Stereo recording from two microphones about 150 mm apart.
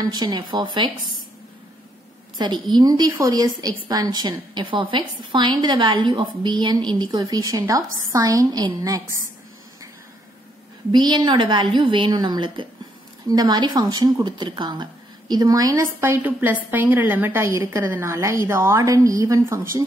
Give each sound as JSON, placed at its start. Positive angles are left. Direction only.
{"t": 0.0, "sound": "speech", "side_deg": -25}
{"t": 2.3, "sound": "a woman's voice", "side_deg": -30}
{"t": 10.9, "sound": "a woman's voice", "side_deg": -30}